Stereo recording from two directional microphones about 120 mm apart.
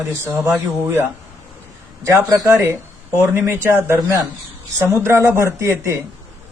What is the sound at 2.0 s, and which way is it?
A man's voice, 25° right (ahead or behind).